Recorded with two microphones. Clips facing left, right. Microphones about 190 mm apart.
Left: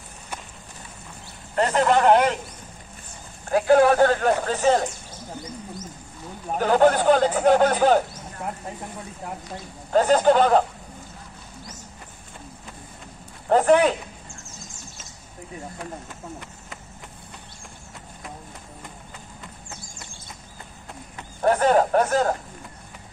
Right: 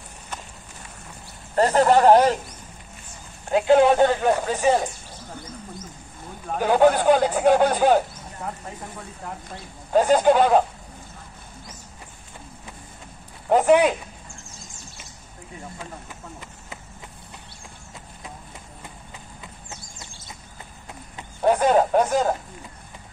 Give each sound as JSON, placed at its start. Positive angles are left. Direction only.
{"t": 1.5, "sound": "speech", "side_deg": -35}
{"t": 3.4, "sound": "speech", "side_deg": -20}
{"t": 6.6, "sound": "speech", "side_deg": -10}
{"t": 9.9, "sound": "speech", "side_deg": -10}
{"t": 13.5, "sound": "speech", "side_deg": -10}
{"t": 21.4, "sound": "speech", "side_deg": -15}